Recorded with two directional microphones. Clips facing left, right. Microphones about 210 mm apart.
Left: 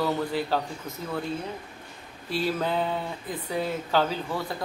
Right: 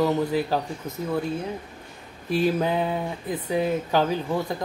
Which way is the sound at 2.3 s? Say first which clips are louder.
Right 5 dB; 15° right (ahead or behind).